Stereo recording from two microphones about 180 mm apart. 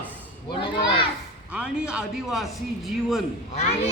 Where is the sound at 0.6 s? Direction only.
25° left (ahead or behind).